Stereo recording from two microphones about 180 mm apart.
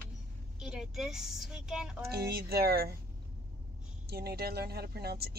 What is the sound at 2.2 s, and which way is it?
Speech, 60° right (ahead or behind).